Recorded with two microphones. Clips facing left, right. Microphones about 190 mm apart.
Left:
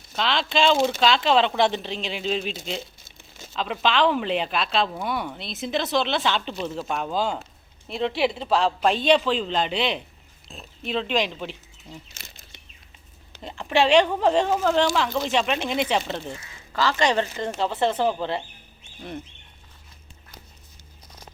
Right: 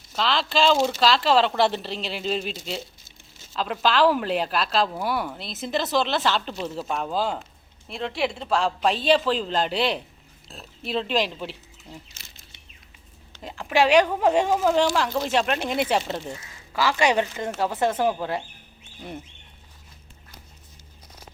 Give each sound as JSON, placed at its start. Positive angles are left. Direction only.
{"t": 0.2, "sound": "a woman's voice", "side_deg": 0}
{"t": 3.0, "sound": "crumpling", "side_deg": 55}
{"t": 3.5, "sound": "a woman's voice", "side_deg": 0}
{"t": 12.2, "sound": "a sound", "side_deg": 55}
{"t": 13.4, "sound": "a woman's voice", "side_deg": -5}